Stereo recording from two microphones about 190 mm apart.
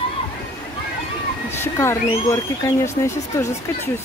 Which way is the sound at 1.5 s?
15° left (ahead or behind).